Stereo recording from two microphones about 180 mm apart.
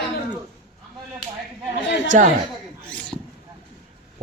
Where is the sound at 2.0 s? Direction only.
40° right (ahead or behind).